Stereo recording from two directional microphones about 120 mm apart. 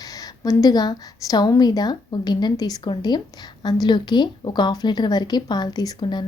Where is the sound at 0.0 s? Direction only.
30° left (ahead or behind).